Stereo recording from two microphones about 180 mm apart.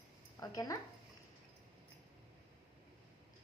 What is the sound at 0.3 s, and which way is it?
Speech, 20° left (ahead or behind).